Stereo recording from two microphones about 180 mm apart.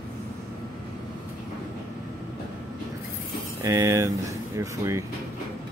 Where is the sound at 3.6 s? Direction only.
15° right (ahead or behind).